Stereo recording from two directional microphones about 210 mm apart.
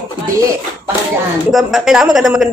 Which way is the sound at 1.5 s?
Centre (ahead or behind).